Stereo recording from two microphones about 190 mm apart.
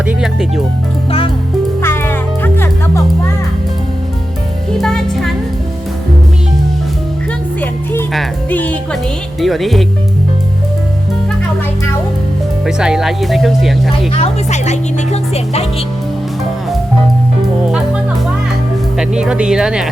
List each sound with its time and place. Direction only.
0.0 s speech: 5° right (ahead or behind)
1.8 s music: 10° left (ahead or behind)
4.8 s music: centre (ahead or behind)
8.1 s speech: 5° left (ahead or behind)
12.6 s speech: 5° right (ahead or behind)
14.1 s speech: 35° left (ahead or behind)
18.9 s speech: 5° right (ahead or behind)